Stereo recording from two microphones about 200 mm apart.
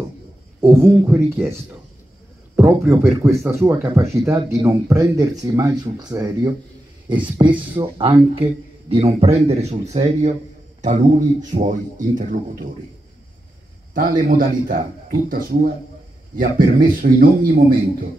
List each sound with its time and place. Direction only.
0.6 s a man's voice: 10° right (ahead or behind); by 12.6 s 40° right (ahead or behind)
13.9 s a man's voice: 45° right (ahead or behind)